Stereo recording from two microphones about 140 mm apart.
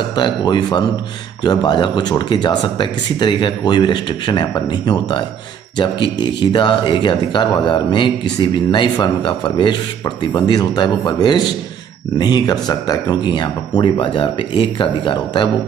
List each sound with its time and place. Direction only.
0.1 s speech: 30° left (ahead or behind)